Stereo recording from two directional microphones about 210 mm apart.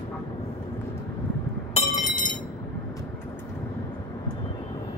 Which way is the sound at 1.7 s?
40° left (ahead or behind).